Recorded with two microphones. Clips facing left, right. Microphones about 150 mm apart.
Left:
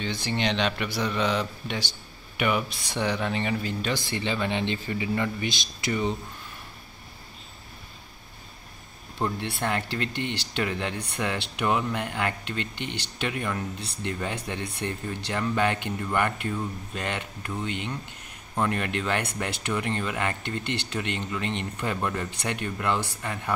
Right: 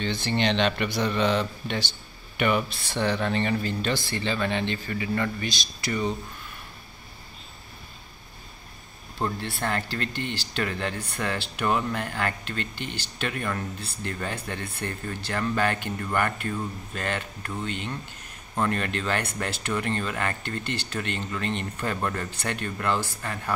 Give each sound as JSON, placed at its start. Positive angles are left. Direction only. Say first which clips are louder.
{"t": 0.0, "sound": "speech", "louder": "right 2 dB", "side_deg": 10}
{"t": 9.4, "sound": "speech", "louder": "left 1 dB", "side_deg": 20}